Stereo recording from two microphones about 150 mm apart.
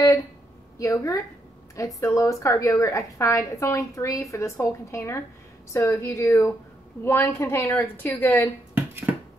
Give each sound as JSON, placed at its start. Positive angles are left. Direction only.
{"t": 0.7, "sound": "a woman's voice", "side_deg": 20}
{"t": 8.7, "sound": "finger snapping", "side_deg": -15}